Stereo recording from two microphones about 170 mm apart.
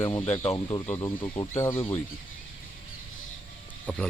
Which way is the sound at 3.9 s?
10° left (ahead or behind).